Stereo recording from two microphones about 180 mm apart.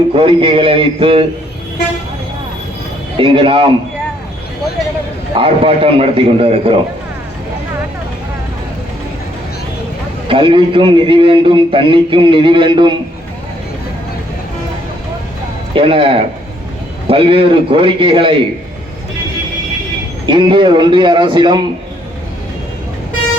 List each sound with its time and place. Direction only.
0.1 s a man's voice: 30° right (ahead or behind)
3.2 s a man's voice: 30° right (ahead or behind)
5.4 s a man's voice: 30° right (ahead or behind)
10.2 s a man's voice: 30° right (ahead or behind)
15.7 s a man's voice: 30° right (ahead or behind)
20.2 s a man's voice: 25° right (ahead or behind)